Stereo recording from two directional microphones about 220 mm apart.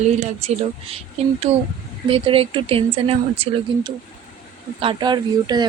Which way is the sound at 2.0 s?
25° right (ahead or behind).